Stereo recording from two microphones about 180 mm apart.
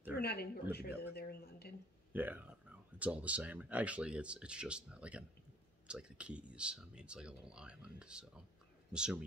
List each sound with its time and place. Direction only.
0.1 s speech: 60° left (ahead or behind)
2.1 s speech: 10° right (ahead or behind)